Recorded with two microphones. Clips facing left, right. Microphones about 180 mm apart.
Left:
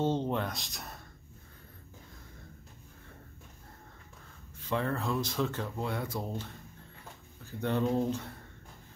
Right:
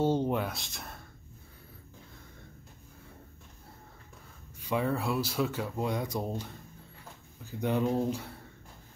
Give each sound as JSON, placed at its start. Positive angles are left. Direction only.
{"t": 0.0, "sound": "speech", "side_deg": -10}
{"t": 4.6, "sound": "speech", "side_deg": -10}
{"t": 7.6, "sound": "speech", "side_deg": -10}